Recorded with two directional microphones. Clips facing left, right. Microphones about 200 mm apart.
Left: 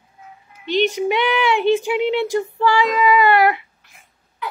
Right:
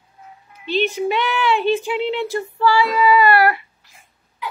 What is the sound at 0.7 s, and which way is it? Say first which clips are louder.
Speech: left 1 dB; 15° left (ahead or behind).